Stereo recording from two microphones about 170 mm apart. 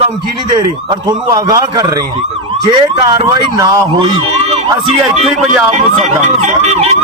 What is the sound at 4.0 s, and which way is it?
Speech, 30° right (ahead or behind).